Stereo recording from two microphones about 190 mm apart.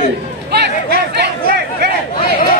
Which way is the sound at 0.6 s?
60° right (ahead or behind).